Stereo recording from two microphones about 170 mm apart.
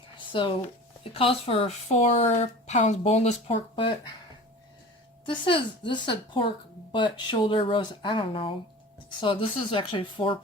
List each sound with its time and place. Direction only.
0.3 s speech: 30° left (ahead or behind)
5.2 s speech: 30° left (ahead or behind)